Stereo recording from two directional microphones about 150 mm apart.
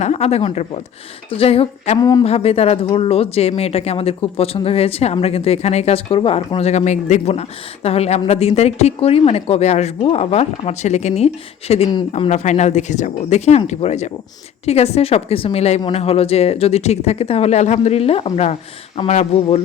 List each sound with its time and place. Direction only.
0.0 s a woman's voice: 45° left (ahead or behind)
2.0 s speech: 25° left (ahead or behind)
2.2 s a woman's voice: 45° left (ahead or behind)